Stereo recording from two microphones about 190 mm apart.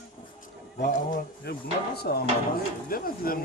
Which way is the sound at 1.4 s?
55° left (ahead or behind).